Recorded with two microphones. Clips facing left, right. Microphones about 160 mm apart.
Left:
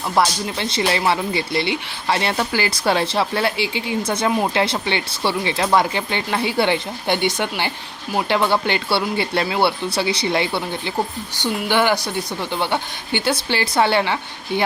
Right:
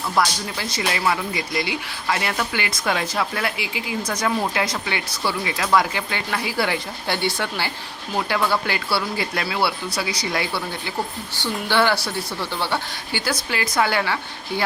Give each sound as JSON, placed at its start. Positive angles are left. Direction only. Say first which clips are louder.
{"t": 0.1, "sound": "speech", "louder": "left 3 dB", "side_deg": 25}